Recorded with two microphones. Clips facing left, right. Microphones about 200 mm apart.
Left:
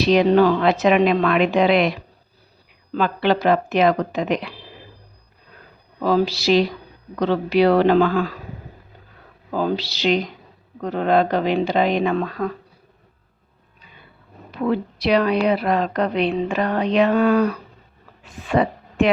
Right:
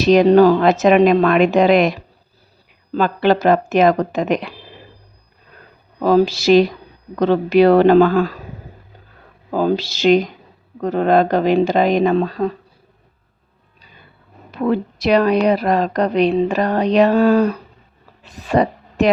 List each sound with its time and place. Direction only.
0.0 s a woman's voice: 45° right (ahead or behind)
6.0 s a woman's voice: 40° right (ahead or behind)
9.5 s a woman's voice: 45° right (ahead or behind)
12.1 s speech: 30° right (ahead or behind)
14.5 s a woman's voice: 45° right (ahead or behind)
18.2 s a sound: 40° right (ahead or behind)